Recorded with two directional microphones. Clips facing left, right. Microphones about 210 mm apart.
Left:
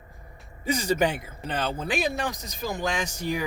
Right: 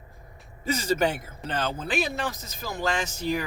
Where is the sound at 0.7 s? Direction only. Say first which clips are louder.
Left 1 dB; 15° left (ahead or behind).